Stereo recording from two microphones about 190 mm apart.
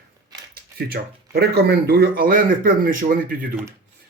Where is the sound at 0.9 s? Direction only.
60° right (ahead or behind).